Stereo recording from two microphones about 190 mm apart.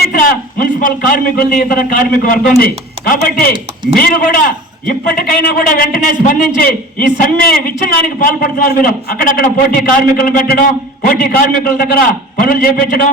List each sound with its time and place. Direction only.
0.1 s a man's voice: 50° left (ahead or behind)